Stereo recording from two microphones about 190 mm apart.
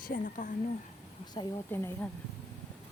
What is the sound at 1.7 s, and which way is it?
Speech, 10° left (ahead or behind).